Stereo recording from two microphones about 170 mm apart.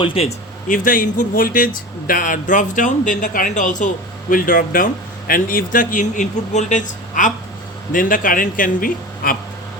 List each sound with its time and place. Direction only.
0.0 s speech: 35° left (ahead or behind)
0.7 s speech: 55° left (ahead or behind)